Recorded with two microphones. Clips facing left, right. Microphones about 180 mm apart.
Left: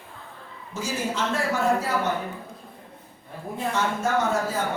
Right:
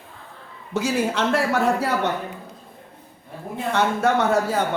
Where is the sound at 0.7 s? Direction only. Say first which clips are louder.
Right 6 dB; 70° right (ahead or behind).